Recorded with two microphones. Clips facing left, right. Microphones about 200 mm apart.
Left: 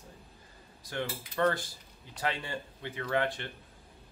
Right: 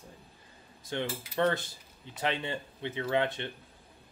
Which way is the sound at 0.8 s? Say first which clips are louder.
Right 2 dB; 25° right (ahead or behind).